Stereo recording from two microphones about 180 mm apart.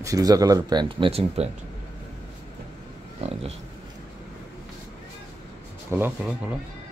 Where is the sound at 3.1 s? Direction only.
35° right (ahead or behind).